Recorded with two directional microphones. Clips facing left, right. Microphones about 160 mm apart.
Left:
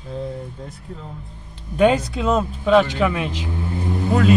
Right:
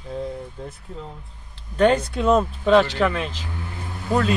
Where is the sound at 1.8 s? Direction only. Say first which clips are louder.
Left 1 dB; 5° left (ahead or behind).